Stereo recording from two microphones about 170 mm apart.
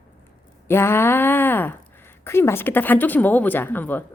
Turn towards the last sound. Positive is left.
turn(degrees=10)  # may be behind; listen again after turning